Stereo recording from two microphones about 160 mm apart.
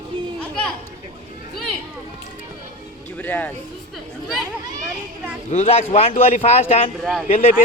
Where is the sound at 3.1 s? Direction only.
10° left (ahead or behind).